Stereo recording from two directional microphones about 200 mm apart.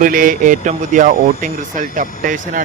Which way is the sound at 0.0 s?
45° right (ahead or behind).